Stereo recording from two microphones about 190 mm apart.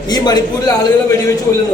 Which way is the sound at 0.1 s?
20° left (ahead or behind).